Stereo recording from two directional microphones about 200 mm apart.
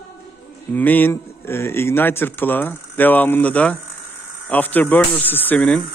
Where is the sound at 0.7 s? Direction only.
10° left (ahead or behind).